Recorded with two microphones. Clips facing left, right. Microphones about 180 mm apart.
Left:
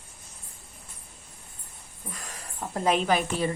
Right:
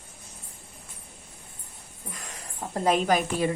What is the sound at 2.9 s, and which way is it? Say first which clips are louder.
Speech: right 1 dB; 45° right (ahead or behind).